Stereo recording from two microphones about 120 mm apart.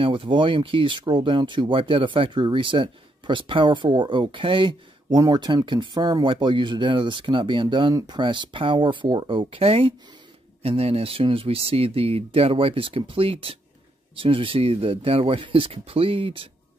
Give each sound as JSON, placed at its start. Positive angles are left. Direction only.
{"t": 0.0, "sound": "speech", "side_deg": -45}